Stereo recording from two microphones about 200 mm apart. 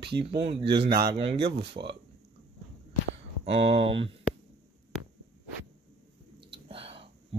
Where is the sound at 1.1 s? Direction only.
25° right (ahead or behind).